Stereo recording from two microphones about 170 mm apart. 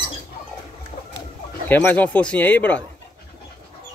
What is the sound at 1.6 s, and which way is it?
Speech, 10° left (ahead or behind).